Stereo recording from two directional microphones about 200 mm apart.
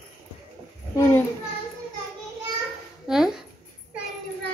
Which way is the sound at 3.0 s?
5° right (ahead or behind).